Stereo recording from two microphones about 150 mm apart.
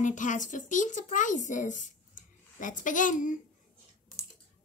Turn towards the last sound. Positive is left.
turn(degrees=60)  # may be behind; listen again after turning